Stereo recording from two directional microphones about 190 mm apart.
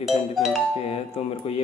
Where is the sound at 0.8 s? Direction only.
30° left (ahead or behind).